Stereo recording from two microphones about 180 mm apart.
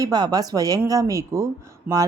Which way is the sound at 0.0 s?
20° right (ahead or behind).